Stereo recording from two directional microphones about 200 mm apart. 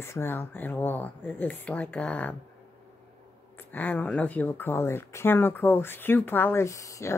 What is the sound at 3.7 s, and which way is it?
Speech, 10° left (ahead or behind).